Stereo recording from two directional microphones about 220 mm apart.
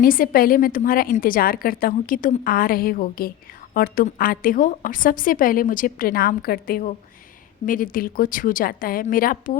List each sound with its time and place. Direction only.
0.0 s a woman's voice: 40° left (ahead or behind)